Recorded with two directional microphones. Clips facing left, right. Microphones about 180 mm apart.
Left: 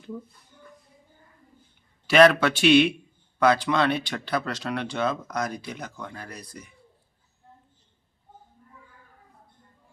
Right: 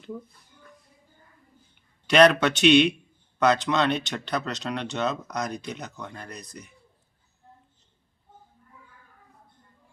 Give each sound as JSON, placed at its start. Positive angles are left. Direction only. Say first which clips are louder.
{"t": 2.0, "sound": "speech", "louder": "left 1 dB", "side_deg": 5}